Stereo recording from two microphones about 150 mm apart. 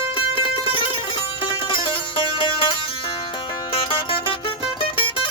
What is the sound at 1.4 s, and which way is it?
Music, 35° left (ahead or behind).